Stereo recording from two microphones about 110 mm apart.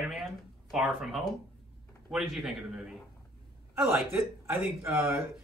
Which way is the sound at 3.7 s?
20° right (ahead or behind).